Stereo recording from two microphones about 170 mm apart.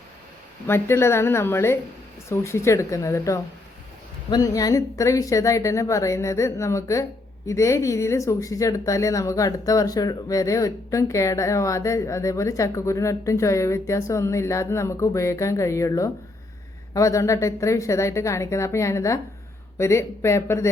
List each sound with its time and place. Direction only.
0.7 s a woman's voice: 15° left (ahead or behind)